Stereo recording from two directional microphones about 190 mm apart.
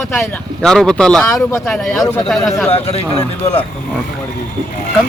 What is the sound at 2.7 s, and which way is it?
Speech, 30° left (ahead or behind).